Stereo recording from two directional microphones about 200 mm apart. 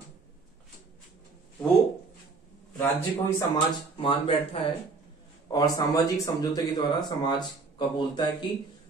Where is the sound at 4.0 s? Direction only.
25° left (ahead or behind).